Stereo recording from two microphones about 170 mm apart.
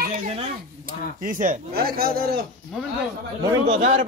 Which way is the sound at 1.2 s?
50° right (ahead or behind).